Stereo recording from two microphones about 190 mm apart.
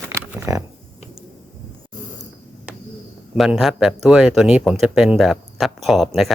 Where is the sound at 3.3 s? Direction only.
5° right (ahead or behind).